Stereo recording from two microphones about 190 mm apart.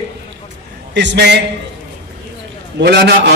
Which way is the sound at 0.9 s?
65° right (ahead or behind).